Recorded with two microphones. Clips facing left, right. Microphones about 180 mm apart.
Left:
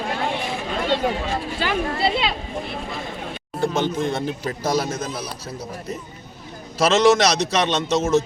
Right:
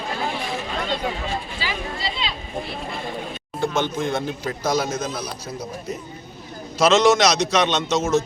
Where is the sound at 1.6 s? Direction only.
60° left (ahead or behind).